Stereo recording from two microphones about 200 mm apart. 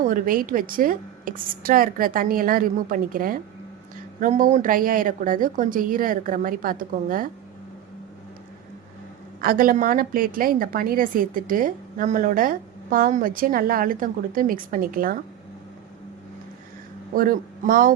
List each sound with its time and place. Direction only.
0.0 s a woman's voice: 45° right (ahead or behind)
9.4 s a woman's voice: 45° right (ahead or behind)
17.2 s a woman's voice: 45° right (ahead or behind)